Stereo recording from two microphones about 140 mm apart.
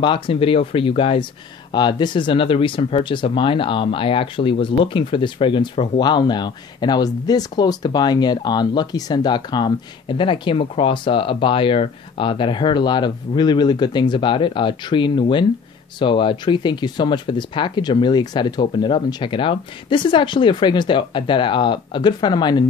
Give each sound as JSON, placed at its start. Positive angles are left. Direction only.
{"t": 0.0, "sound": "speech", "side_deg": 35}